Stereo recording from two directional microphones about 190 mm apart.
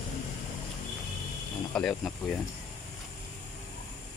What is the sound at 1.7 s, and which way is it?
Speech, 5° left (ahead or behind).